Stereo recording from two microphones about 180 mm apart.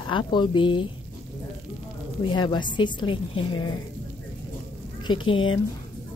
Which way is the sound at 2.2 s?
25° left (ahead or behind).